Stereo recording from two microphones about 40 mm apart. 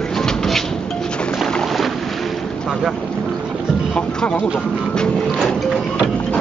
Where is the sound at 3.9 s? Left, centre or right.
Left.